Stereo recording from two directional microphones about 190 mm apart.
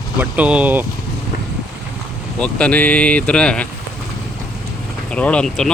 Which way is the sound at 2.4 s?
5° left (ahead or behind).